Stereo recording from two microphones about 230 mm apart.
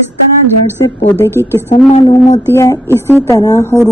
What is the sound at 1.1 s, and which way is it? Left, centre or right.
A woman's voice, centre.